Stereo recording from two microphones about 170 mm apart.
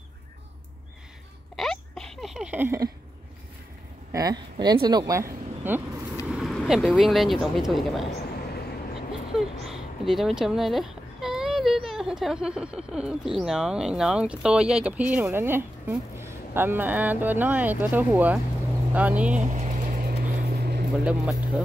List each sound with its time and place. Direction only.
1.6 s a sound: centre (ahead or behind); by 2.9 s 15° right (ahead or behind)
4.1 s speech: 20° right (ahead or behind)
6.2 s speech: centre (ahead or behind)
9.3 s speech: centre (ahead or behind)
19.3 s vehicle: 45° right (ahead or behind); by 20.8 s 70° right (ahead or behind)
21.0 s speech: 5° right (ahead or behind)